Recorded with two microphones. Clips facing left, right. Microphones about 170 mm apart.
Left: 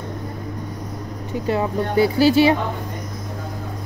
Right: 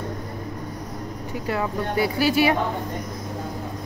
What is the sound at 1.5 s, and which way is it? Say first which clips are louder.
Speech: left 5 dB; 25° left (ahead or behind).